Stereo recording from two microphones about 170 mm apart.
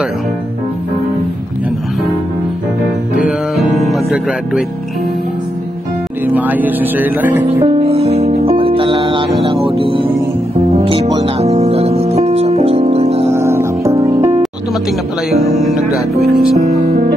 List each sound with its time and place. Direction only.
3.2 s music: 5° right (ahead or behind)
6.2 s speech: 10° right (ahead or behind)
7.8 s music: 35° right (ahead or behind)
13.3 s music: 15° right (ahead or behind)
16.5 s speech: 40° right (ahead or behind)